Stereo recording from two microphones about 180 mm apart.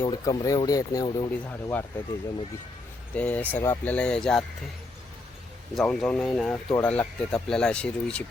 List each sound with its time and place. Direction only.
0.0 s speech: 25° left (ahead or behind)
3.2 s speech: 10° left (ahead or behind)
5.7 s speech: centre (ahead or behind)